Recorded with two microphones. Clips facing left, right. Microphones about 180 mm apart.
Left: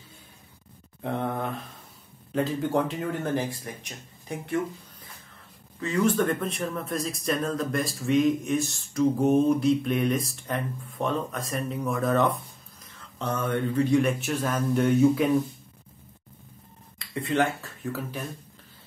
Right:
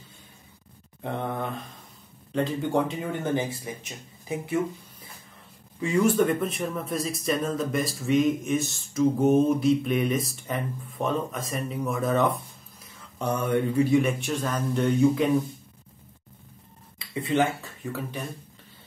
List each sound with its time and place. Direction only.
1.0 s speech: centre (ahead or behind)
5.8 s speech: 10° right (ahead or behind)
13.2 s speech: 10° right (ahead or behind); by 15.3 s 5° left (ahead or behind)
17.0 s speech: centre (ahead or behind)